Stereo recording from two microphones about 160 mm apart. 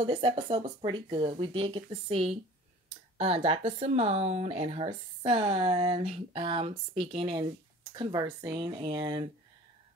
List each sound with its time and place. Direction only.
0.0 s speech: 30° right (ahead or behind)